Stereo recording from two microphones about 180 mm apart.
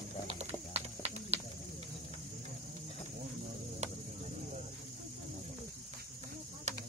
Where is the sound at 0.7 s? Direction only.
35° right (ahead or behind).